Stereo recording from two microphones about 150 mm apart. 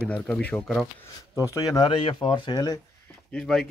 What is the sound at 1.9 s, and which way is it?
Speech, 35° left (ahead or behind).